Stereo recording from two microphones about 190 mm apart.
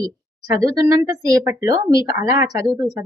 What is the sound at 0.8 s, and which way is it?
A woman's voice, 20° right (ahead or behind).